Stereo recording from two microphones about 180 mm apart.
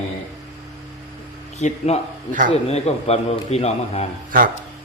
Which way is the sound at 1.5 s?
40° left (ahead or behind).